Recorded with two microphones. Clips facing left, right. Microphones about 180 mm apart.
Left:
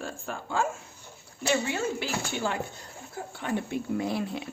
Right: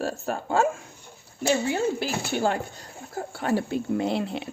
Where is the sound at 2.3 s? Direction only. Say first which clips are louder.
Right 8 dB; 50° right (ahead or behind).